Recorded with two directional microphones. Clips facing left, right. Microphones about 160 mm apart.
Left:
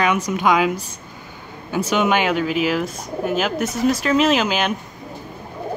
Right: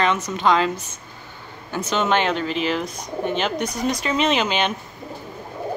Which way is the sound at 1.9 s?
10° left (ahead or behind).